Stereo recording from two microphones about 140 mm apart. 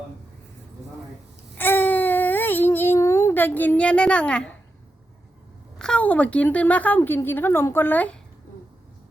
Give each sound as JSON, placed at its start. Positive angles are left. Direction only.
{"t": 1.5, "sound": "baby cry", "side_deg": 15}
{"t": 5.8, "sound": "a woman's voice", "side_deg": 10}